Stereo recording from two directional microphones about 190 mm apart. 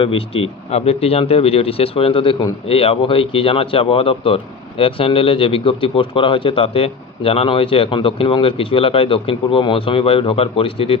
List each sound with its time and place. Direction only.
0.0 s a man's voice: 30° left (ahead or behind)